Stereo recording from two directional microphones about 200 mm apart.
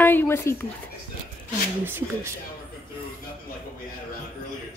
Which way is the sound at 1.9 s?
10° right (ahead or behind).